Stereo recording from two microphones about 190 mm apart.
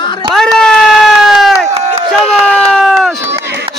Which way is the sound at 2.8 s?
Centre (ahead or behind).